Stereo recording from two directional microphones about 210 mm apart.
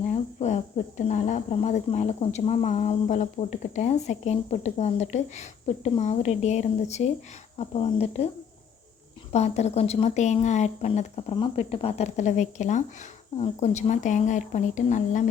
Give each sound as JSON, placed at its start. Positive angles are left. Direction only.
{"t": 0.1, "sound": "speech", "side_deg": 35}
{"t": 9.3, "sound": "speech", "side_deg": 30}